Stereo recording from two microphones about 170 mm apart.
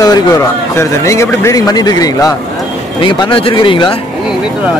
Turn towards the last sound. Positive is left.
turn(degrees=30)  # may be behind; listen again after turning